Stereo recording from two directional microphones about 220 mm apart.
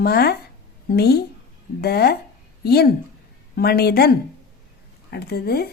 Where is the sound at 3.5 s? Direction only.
45° left (ahead or behind).